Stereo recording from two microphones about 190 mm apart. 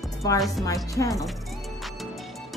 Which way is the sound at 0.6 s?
20° left (ahead or behind).